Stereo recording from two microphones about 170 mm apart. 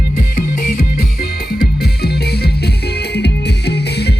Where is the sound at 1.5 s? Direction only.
70° left (ahead or behind).